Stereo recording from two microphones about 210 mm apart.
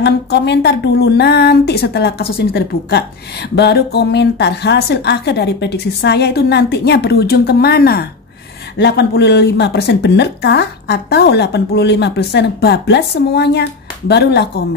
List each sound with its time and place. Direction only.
0.0 s speech: 55° left (ahead or behind)